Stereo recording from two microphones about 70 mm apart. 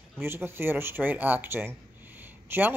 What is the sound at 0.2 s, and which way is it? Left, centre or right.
Speech, right.